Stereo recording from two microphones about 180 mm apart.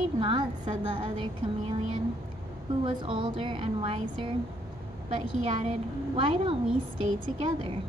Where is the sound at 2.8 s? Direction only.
30° right (ahead or behind).